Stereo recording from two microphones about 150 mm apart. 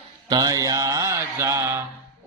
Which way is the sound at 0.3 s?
25° right (ahead or behind).